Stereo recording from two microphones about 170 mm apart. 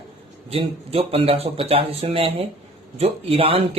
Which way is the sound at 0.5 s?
35° right (ahead or behind).